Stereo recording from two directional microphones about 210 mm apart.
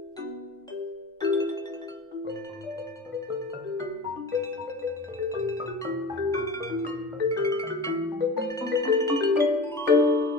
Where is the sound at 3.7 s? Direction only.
15° left (ahead or behind).